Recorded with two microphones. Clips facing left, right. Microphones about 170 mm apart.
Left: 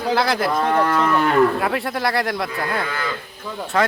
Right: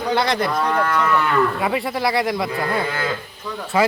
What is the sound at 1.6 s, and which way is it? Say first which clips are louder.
Speech: right 1 dB; centre (ahead or behind).